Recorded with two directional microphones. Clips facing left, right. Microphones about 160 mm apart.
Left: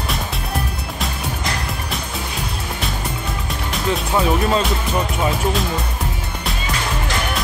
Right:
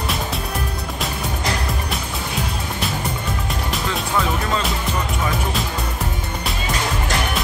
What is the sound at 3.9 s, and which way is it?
Speech, 20° left (ahead or behind).